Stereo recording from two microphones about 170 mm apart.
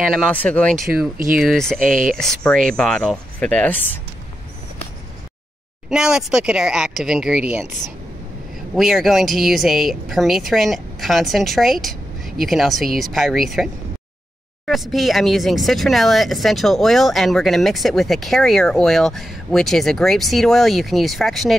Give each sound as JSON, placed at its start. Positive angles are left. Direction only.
{"t": 0.3, "sound": "speech", "side_deg": 10}
{"t": 1.1, "sound": "speech", "side_deg": -55}
{"t": 1.4, "sound": "speech", "side_deg": 0}
{"t": 1.8, "sound": "speech", "side_deg": -55}
{"t": 2.1, "sound": "speech", "side_deg": 5}
{"t": 5.9, "sound": "speech", "side_deg": -5}
{"t": 8.7, "sound": "speech", "side_deg": 0}
{"t": 14.7, "sound": "speech", "side_deg": 0}